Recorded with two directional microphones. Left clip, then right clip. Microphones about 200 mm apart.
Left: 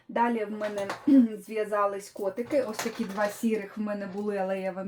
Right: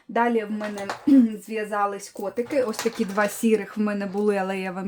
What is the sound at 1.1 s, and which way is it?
Music, 55° right (ahead or behind).